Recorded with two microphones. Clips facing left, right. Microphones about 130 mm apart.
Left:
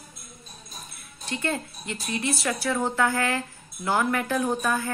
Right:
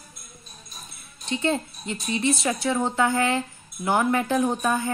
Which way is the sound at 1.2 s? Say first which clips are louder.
Right 4 dB; 20° right (ahead or behind).